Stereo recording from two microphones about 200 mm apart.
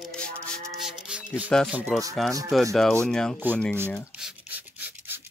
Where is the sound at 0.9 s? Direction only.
5° right (ahead or behind).